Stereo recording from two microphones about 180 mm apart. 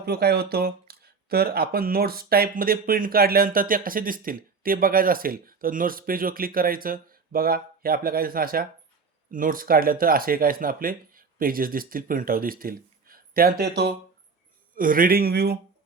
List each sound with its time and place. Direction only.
0.0 s speech: 60° right (ahead or behind)
14.8 s speech: 50° right (ahead or behind)